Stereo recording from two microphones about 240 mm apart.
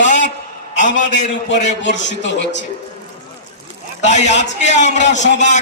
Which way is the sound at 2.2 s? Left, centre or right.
Left.